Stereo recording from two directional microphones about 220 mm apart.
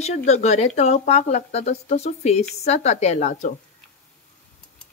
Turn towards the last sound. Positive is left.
turn(degrees=30)  # may be behind; listen again after turning